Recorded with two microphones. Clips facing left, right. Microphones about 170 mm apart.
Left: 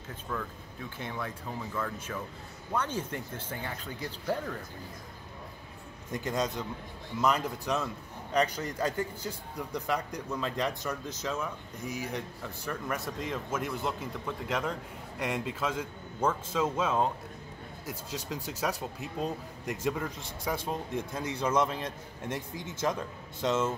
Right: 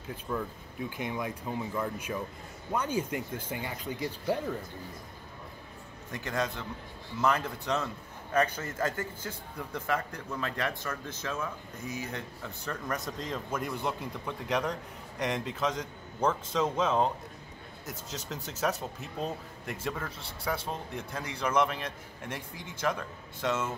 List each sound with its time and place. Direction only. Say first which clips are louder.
0.3 s speech: right 2 dB; 15° right (ahead or behind)
6.1 s a man's voice: left 2 dB; 20° left (ahead or behind)
12.6 s a man's voice: even; 5° left (ahead or behind); by 23.7 s 20° left (ahead or behind)